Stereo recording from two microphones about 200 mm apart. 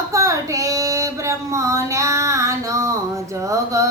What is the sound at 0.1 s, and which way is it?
Child singing, 15° right (ahead or behind).